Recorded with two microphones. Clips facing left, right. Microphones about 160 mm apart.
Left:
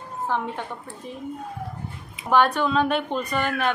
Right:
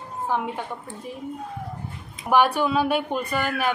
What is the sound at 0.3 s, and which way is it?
Speech, 10° right (ahead or behind).